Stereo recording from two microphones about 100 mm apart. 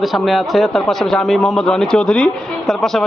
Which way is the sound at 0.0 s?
Centre (ahead or behind).